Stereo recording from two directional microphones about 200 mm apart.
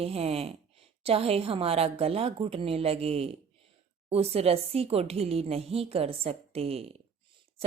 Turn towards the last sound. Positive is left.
turn(degrees=-30)  # may be behind; listen again after turning